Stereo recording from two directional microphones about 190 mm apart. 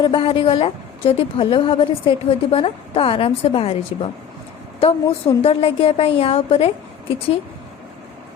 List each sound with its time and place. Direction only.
0.0 s a woman's voice: 25° left (ahead or behind)